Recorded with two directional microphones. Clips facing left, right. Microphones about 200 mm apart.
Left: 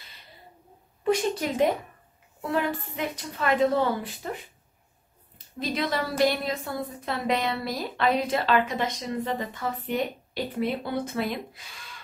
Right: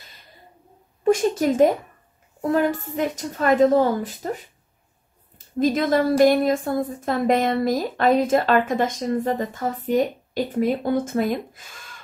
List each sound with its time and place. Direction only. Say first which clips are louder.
1.0 s a woman's voice: right 6 dB; 45° right (ahead or behind)
5.6 s a woman's voice: right 9 dB; 45° right (ahead or behind)